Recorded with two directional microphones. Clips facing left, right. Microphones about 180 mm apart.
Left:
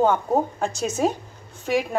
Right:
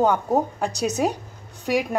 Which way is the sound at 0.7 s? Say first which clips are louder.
Right 2 dB; 40° right (ahead or behind).